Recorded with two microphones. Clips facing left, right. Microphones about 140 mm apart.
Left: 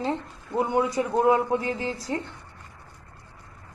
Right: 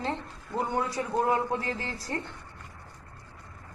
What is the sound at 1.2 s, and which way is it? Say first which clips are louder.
Speech: left 6 dB; 20° left (ahead or behind).